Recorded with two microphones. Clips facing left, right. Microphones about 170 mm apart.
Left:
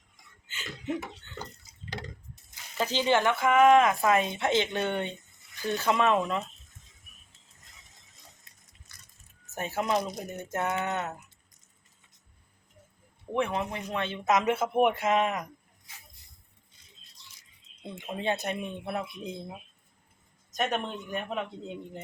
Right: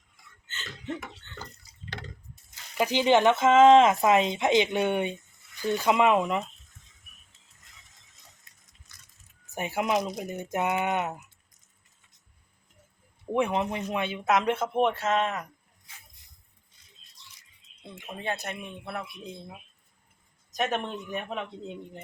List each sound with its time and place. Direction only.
0.4 s laughter: 10° left (ahead or behind)
2.7 s speech: 15° right (ahead or behind)
9.6 s speech: 15° right (ahead or behind)
13.3 s speech: 15° right (ahead or behind)
14.3 s speech: 5° left (ahead or behind)
17.8 s speech: 20° left (ahead or behind)
20.5 s speech: centre (ahead or behind)